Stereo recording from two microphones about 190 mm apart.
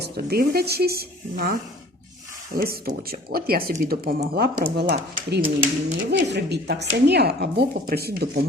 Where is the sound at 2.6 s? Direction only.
50° right (ahead or behind).